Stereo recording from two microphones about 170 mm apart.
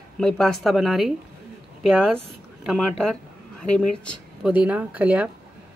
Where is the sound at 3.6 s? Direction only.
5° left (ahead or behind).